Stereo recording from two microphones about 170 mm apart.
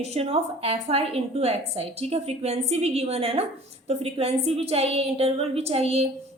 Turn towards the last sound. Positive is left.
turn(degrees=-35)  # may be behind; listen again after turning